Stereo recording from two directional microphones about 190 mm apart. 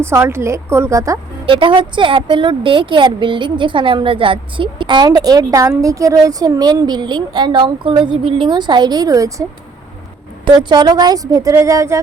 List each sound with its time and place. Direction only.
0.0 s speech: 15° right (ahead or behind)
1.5 s speech: 25° right (ahead or behind)